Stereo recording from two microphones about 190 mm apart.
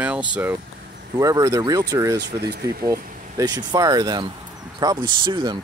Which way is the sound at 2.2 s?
60° right (ahead or behind).